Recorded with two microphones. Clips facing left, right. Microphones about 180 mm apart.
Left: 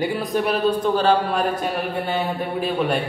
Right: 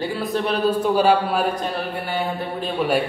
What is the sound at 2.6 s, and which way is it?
Speech, centre (ahead or behind).